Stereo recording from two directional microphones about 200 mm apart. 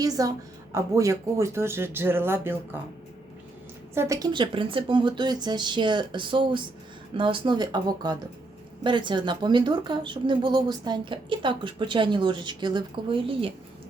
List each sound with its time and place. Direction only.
0.0 s speech: 15° right (ahead or behind)
3.9 s speech: 15° right (ahead or behind)